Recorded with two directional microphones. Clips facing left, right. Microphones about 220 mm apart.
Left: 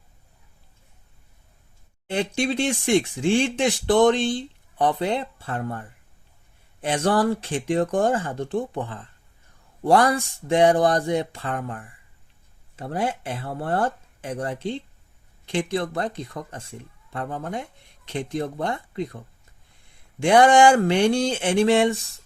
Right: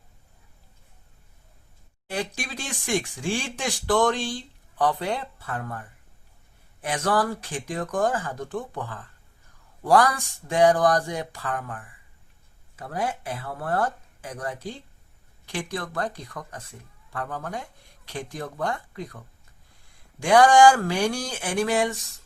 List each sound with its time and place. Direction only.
2.0 s speech: 25° left (ahead or behind)
6.8 s speech: 30° left (ahead or behind)